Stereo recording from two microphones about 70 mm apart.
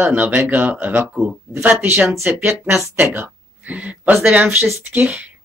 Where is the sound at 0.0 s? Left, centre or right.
Right.